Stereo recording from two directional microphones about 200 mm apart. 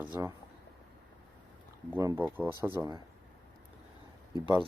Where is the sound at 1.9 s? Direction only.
10° right (ahead or behind).